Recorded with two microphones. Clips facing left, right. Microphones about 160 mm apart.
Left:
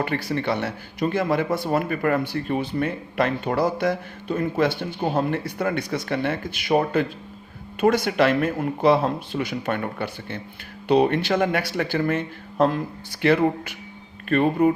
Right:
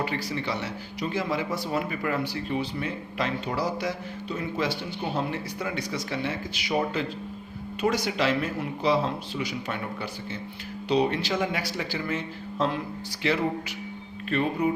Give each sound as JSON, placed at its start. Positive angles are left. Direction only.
{"t": 0.0, "sound": "speech", "side_deg": 55}